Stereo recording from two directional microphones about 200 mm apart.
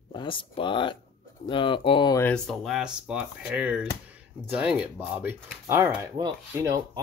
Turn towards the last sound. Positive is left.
turn(degrees=-15)  # may be behind; listen again after turning